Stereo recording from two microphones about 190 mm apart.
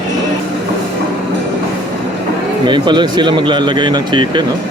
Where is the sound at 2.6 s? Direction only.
25° right (ahead or behind).